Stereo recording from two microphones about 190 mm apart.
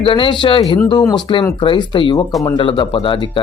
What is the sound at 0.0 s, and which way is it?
Speech, 25° left (ahead or behind).